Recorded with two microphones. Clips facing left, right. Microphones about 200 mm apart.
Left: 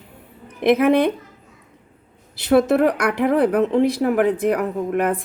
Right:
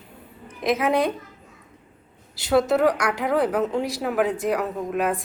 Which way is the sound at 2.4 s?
55° left (ahead or behind).